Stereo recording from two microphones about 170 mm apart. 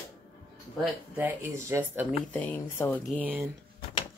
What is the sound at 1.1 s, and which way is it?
Speech, 10° right (ahead or behind).